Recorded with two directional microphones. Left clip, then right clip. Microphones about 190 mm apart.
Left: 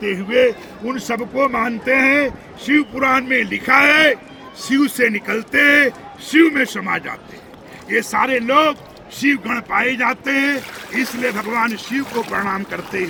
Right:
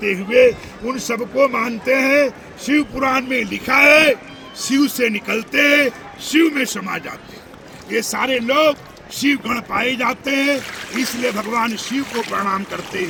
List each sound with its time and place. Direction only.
0.0 s a man's voice: 15° right (ahead or behind)
9.7 s a man's voice: 10° right (ahead or behind)
10.7 s speech: 45° left (ahead or behind)
11.2 s a man's voice: 10° right (ahead or behind)
12.0 s speech: 50° left (ahead or behind)
12.3 s a man's voice: 10° right (ahead or behind)